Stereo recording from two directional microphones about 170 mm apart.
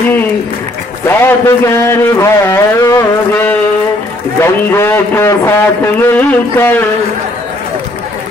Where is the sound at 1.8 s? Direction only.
15° left (ahead or behind).